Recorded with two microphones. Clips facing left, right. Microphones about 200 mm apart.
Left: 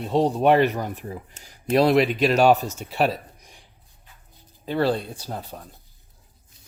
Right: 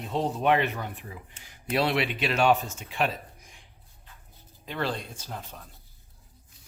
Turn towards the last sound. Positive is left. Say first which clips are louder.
# left 6 dB
turn(degrees=40)  # may be behind; listen again after turning